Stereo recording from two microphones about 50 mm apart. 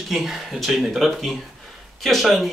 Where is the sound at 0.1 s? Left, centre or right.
Centre.